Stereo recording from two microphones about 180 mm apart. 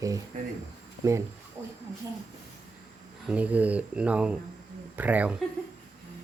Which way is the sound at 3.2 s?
10° right (ahead or behind).